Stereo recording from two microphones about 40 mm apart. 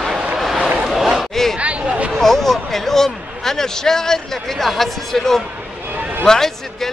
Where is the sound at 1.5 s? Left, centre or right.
Right.